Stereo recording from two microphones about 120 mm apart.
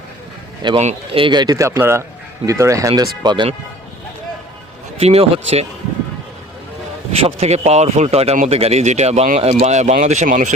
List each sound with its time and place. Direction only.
0.6 s speech: 40° right (ahead or behind)
4.9 s speech: 60° right (ahead or behind)
7.2 s speech: 55° right (ahead or behind); by 10.5 s 85° right